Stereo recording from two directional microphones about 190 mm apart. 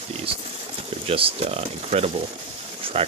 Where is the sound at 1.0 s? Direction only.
30° right (ahead or behind).